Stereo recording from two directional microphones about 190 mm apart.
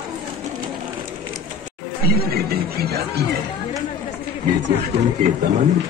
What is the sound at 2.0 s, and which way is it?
Speech, 55° right (ahead or behind).